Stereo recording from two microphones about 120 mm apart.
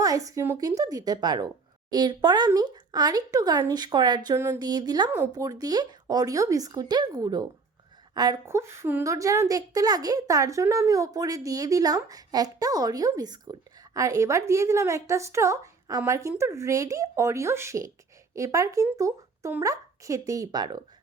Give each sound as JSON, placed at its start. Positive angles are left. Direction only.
{"t": 0.0, "sound": "speech", "side_deg": -30}
{"t": 8.4, "sound": "speech", "side_deg": -20}